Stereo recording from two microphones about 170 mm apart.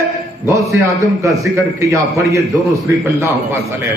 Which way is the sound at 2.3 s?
20° right (ahead or behind).